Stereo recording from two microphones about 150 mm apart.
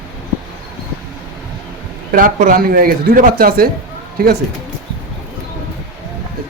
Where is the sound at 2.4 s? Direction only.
75° right (ahead or behind).